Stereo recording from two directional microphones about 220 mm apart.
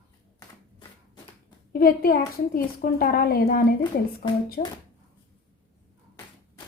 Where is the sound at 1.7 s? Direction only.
45° left (ahead or behind).